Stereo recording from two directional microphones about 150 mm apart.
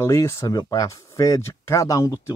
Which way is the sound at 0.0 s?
20° left (ahead or behind).